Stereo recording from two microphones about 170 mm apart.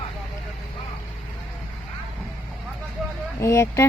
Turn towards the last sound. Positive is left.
turn(degrees=15)  # may be behind; listen again after turning